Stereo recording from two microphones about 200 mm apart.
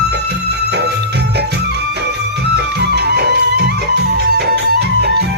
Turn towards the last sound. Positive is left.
turn(degrees=-55)  # may be behind; listen again after turning